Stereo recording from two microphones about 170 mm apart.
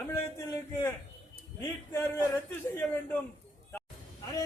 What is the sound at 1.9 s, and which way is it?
A man's voice, 15° left (ahead or behind).